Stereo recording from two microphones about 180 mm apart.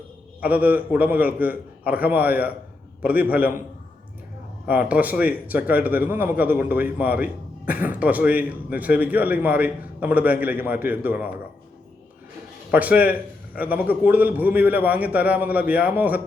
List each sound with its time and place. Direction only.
0.4 s speech: 10° right (ahead or behind)
4.6 s speech: 10° right (ahead or behind)
12.7 s speech: 10° right (ahead or behind)